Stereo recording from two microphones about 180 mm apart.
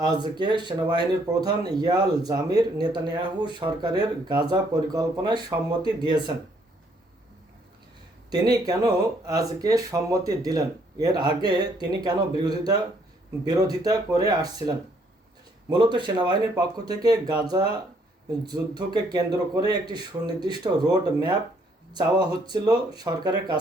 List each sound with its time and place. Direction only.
0.0 s speech: 25° right (ahead or behind)
8.3 s speech: 20° right (ahead or behind)